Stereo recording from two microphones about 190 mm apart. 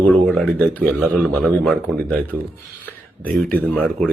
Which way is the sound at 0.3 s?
Centre (ahead or behind).